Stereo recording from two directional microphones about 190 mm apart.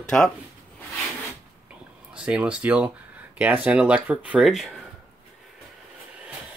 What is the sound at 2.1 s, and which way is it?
Speech, 5° right (ahead or behind).